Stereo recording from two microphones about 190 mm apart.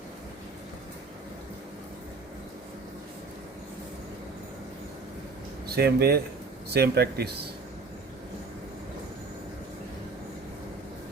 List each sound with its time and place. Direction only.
5.6 s speech: 55° right (ahead or behind)